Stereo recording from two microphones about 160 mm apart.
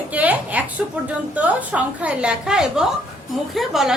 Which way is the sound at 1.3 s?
10° right (ahead or behind).